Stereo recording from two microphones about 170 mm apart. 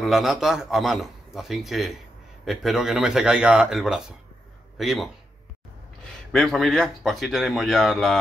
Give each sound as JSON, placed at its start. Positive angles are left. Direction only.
{"t": 0.0, "sound": "a man's voice", "side_deg": 0}
{"t": 6.3, "sound": "a man's voice", "side_deg": 0}